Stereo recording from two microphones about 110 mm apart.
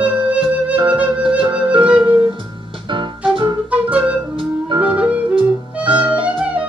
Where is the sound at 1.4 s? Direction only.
50° right (ahead or behind).